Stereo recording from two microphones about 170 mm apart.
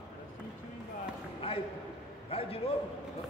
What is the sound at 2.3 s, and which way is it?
Speech, 35° left (ahead or behind).